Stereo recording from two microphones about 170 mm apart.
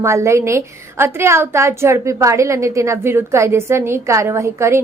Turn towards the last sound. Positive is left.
turn(degrees=-15)  # may be behind; listen again after turning